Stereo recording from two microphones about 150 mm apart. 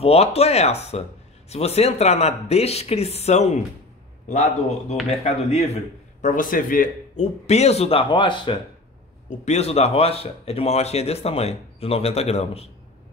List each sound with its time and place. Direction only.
0.0 s a man's voice: 45° left (ahead or behind)
6.2 s speech: 65° left (ahead or behind); by 8.5 s 30° left (ahead or behind)
9.4 s speech: 45° left (ahead or behind)